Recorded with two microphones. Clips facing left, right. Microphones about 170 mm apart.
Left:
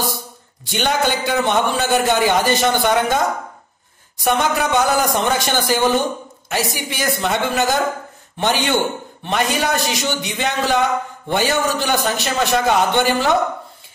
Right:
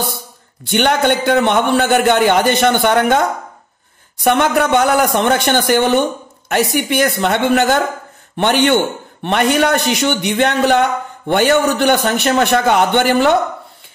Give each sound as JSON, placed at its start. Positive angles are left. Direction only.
{"t": 0.7, "sound": "a man's voice", "side_deg": -60}